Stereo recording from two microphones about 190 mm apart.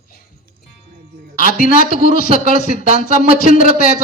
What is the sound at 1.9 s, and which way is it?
Speech, 50° left (ahead or behind).